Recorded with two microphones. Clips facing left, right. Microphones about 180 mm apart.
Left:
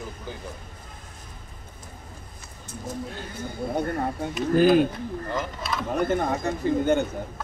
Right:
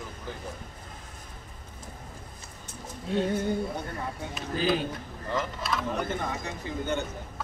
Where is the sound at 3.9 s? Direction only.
55° left (ahead or behind).